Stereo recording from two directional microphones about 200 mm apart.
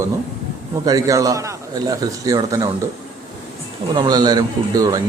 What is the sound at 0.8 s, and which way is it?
A man's voice, 15° right (ahead or behind).